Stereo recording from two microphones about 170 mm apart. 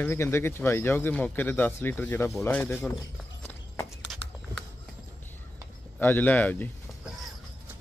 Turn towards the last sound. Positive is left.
turn(degrees=10)  # may be behind; listen again after turning